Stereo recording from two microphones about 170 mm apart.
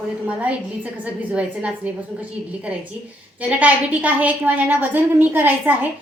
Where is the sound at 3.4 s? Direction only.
10° right (ahead or behind).